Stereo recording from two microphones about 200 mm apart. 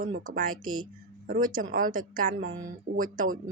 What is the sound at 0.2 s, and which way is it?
A woman's voice, 45° right (ahead or behind).